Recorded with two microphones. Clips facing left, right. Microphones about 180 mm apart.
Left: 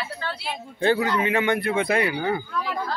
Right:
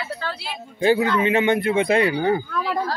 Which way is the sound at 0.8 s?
15° right (ahead or behind).